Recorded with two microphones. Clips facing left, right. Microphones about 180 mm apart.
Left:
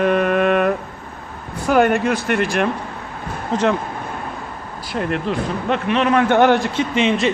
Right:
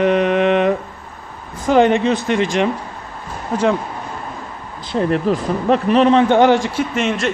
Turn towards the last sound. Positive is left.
turn(degrees=0)  # may be behind; listen again after turning